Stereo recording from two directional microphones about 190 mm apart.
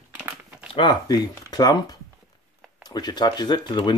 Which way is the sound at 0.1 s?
10° right (ahead or behind).